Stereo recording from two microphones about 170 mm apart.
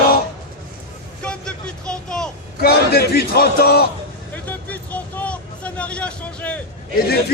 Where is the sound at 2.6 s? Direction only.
70° left (ahead or behind).